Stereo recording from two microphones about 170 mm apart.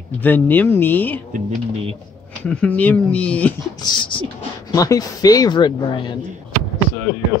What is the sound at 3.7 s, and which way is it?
Speech, 25° left (ahead or behind).